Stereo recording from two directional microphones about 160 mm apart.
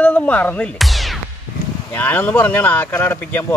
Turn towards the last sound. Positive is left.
turn(degrees=15)  # may be behind; listen again after turning